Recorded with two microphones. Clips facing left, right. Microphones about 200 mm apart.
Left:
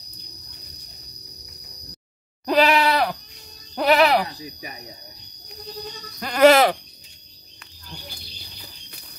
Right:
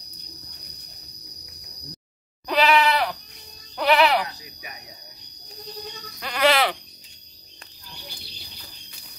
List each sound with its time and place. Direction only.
2.4 s bleat: 45° left (ahead or behind)
3.7 s sheep: 40° left (ahead or behind)
6.2 s speech: 45° left (ahead or behind)